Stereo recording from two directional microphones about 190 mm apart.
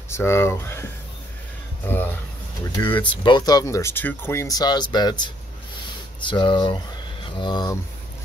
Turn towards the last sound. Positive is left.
turn(degrees=20)  # may be behind; listen again after turning